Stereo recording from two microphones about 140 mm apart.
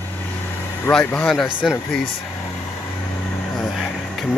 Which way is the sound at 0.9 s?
5° left (ahead or behind).